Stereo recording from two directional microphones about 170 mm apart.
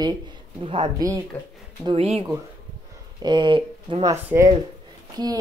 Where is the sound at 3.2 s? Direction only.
25° right (ahead or behind).